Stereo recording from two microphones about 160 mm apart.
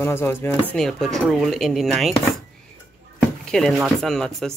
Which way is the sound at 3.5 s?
5° left (ahead or behind).